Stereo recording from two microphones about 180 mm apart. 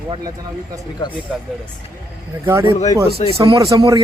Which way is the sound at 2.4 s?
15° right (ahead or behind).